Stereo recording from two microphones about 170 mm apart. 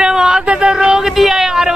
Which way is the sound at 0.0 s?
5° right (ahead or behind).